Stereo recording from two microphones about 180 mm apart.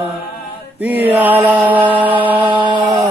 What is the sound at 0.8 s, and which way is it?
Chant, 10° right (ahead or behind).